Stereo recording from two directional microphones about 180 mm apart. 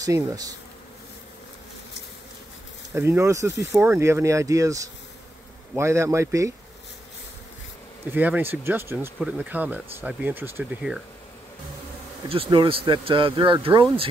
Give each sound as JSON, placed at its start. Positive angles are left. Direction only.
{"t": 0.0, "sound": "speech", "side_deg": -20}
{"t": 2.9, "sound": "speech", "side_deg": -15}
{"t": 8.1, "sound": "speech", "side_deg": -10}
{"t": 12.3, "sound": "speech", "side_deg": -30}